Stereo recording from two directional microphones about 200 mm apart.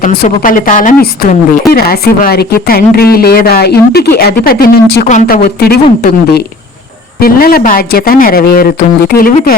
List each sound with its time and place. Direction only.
0.2 s speech: 45° left (ahead or behind)